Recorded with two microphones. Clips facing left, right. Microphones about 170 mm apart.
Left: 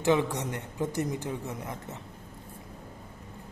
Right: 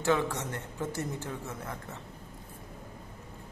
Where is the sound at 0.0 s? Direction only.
15° left (ahead or behind).